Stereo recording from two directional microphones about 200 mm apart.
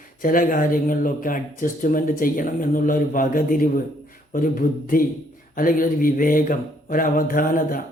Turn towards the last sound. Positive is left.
turn(degrees=45)  # may be behind; listen again after turning